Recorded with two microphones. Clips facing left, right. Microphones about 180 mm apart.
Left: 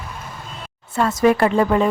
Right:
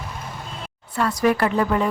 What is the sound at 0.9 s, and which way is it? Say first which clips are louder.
Speech: left 4 dB; 25° left (ahead or behind).